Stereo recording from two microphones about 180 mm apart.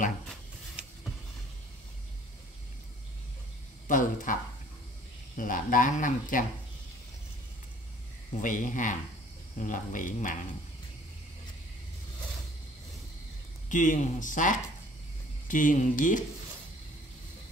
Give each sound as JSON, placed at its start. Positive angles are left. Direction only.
{"t": 3.8, "sound": "speech", "side_deg": 45}
{"t": 8.4, "sound": "speech", "side_deg": 45}
{"t": 13.7, "sound": "speech", "side_deg": 45}